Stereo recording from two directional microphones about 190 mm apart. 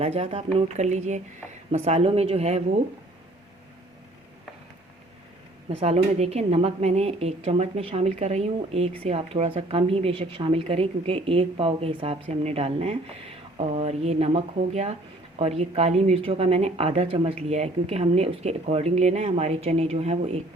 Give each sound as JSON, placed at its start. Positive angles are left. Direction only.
{"t": 0.0, "sound": "a woman's voice", "side_deg": -35}
{"t": 5.6, "sound": "a woman's voice", "side_deg": -35}